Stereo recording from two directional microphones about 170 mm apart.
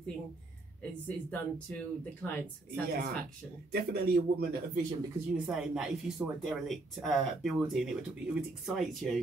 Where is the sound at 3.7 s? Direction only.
65° right (ahead or behind).